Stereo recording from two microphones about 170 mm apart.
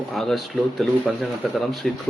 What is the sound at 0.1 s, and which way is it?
Speech, centre (ahead or behind).